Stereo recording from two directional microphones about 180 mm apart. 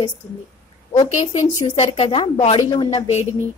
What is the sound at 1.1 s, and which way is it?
A woman's voice, 40° left (ahead or behind).